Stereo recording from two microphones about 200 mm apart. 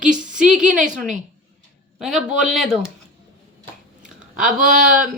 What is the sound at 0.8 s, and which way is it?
Speech, 40° right (ahead or behind).